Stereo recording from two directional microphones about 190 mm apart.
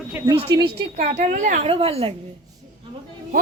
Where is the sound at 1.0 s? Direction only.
40° right (ahead or behind).